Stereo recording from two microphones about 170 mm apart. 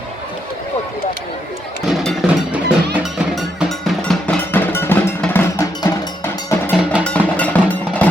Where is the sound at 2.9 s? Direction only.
5° right (ahead or behind); by 5.9 s 15° left (ahead or behind).